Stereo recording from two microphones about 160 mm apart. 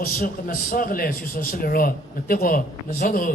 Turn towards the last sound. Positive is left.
turn(degrees=55)  # may be behind; listen again after turning